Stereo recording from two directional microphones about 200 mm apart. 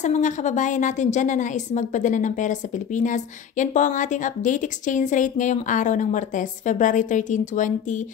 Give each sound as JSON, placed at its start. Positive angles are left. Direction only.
{"t": 0.0, "sound": "a woman's voice", "side_deg": 35}